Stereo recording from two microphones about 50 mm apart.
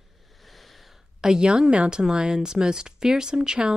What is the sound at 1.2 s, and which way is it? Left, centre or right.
A woman's voice, centre.